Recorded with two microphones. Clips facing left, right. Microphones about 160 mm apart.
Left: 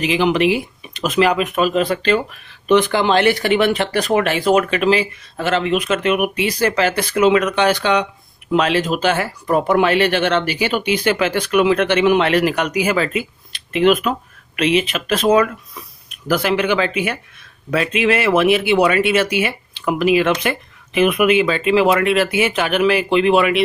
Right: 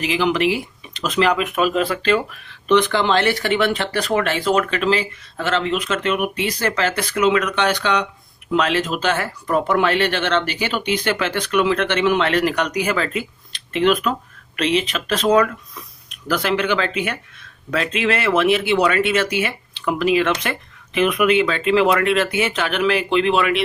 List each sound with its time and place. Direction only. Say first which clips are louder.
0.0 s speech: left 3 dB; 20° left (ahead or behind)
7.0 s speech: left 4 dB; 25° left (ahead or behind)
8.9 s speech: left 3 dB; 15° left (ahead or behind)